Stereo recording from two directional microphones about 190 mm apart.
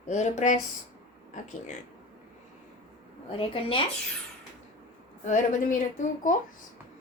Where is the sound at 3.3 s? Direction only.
30° left (ahead or behind).